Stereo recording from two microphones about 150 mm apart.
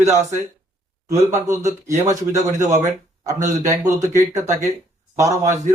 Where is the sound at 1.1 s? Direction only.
20° right (ahead or behind).